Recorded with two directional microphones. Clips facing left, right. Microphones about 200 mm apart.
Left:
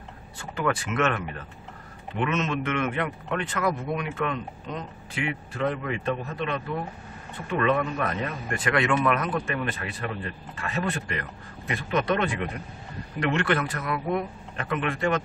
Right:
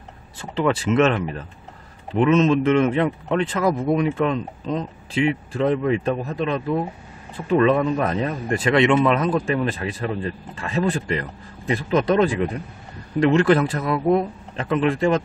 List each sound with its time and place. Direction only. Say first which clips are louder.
0.4 s speech: right 6 dB; 25° right (ahead or behind)